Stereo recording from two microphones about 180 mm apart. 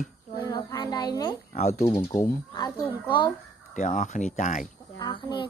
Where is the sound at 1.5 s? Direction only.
40° left (ahead or behind).